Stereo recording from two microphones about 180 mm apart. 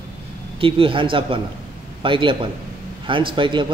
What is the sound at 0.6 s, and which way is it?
Speech, 30° right (ahead or behind).